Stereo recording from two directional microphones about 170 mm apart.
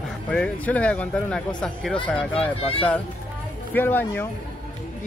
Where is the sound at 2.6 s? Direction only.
35° left (ahead or behind).